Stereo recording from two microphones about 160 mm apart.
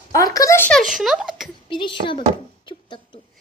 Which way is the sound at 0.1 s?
20° left (ahead or behind).